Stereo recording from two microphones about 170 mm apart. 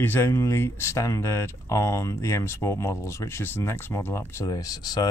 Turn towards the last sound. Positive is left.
turn(degrees=25)  # may be behind; listen again after turning